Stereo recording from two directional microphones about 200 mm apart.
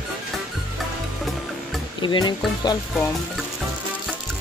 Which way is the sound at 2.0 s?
25° left (ahead or behind).